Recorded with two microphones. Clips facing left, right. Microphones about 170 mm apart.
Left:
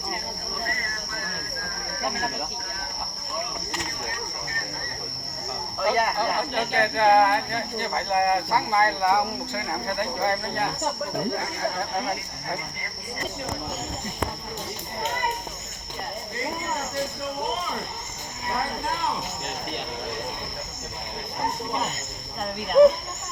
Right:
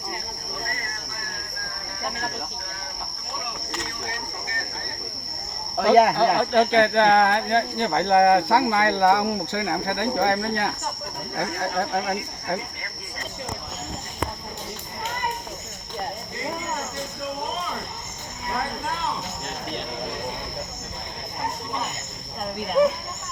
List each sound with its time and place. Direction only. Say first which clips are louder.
5.8 s speech: right 7 dB; 75° right (ahead or behind)